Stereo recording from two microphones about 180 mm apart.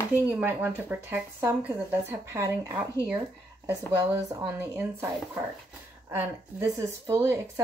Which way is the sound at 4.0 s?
15° right (ahead or behind).